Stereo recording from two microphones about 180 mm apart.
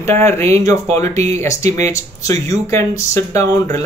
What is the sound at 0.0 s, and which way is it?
Speech, 15° left (ahead or behind).